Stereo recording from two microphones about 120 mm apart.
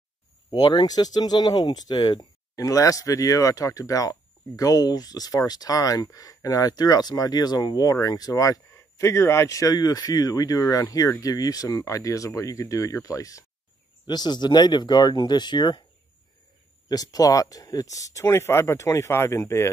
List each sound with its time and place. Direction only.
0.5 s speech: 35° left (ahead or behind)
16.9 s speech: 30° left (ahead or behind)